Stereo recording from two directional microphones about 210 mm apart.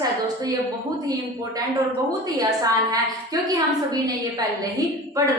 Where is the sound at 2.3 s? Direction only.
15° right (ahead or behind).